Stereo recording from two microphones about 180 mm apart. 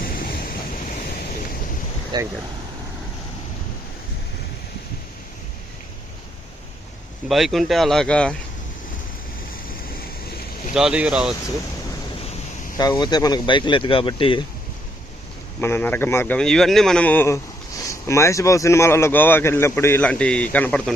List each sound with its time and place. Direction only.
0.0 s waves: 55° left (ahead or behind)
2.1 s speech: 25° right (ahead or behind)
7.3 s speech: centre (ahead or behind)
10.8 s speech: 5° right (ahead or behind)
12.7 s speech: 20° left (ahead or behind)
15.6 s speech: 10° left (ahead or behind)